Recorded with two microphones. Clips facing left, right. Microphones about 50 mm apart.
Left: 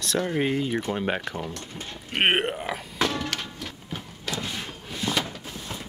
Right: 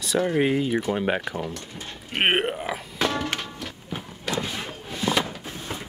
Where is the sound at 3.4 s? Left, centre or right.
Centre.